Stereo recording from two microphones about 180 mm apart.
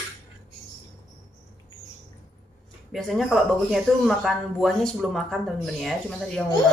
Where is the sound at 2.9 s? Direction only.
Centre (ahead or behind).